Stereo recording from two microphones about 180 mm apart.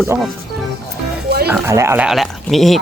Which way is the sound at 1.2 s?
65° right (ahead or behind).